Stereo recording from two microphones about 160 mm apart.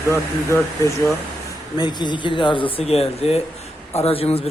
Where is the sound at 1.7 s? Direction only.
25° left (ahead or behind).